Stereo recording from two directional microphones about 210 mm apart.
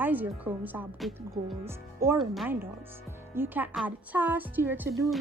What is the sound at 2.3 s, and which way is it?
A woman's voice, centre (ahead or behind).